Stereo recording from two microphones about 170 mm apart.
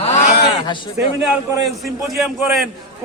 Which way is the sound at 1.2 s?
Centre (ahead or behind).